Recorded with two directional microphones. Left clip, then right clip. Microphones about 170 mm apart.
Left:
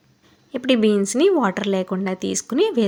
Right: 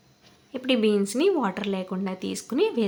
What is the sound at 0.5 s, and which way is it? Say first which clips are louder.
A woman's voice: left 5 dB; 30° left (ahead or behind).